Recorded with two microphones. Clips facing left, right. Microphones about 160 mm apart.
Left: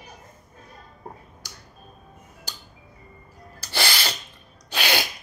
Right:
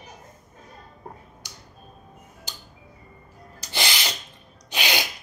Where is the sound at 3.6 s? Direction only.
15° right (ahead or behind).